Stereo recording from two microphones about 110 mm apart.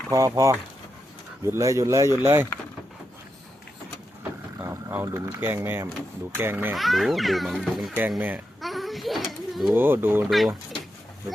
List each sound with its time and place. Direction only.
0.1 s speech: 30° right (ahead or behind)
4.2 s vehicle: 20° right (ahead or behind)
5.0 s speech: 25° right (ahead or behind)
6.7 s a child's voice: centre (ahead or behind)
8.6 s a sound: centre (ahead or behind)
9.7 s speech: 20° right (ahead or behind)
10.2 s a child's voice: centre (ahead or behind)